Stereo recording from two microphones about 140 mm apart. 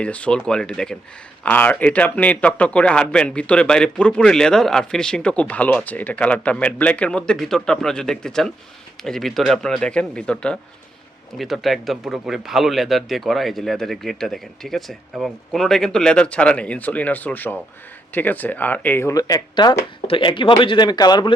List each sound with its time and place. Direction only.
0.0 s a man's voice: 10° left (ahead or behind); by 21.3 s 30° left (ahead or behind)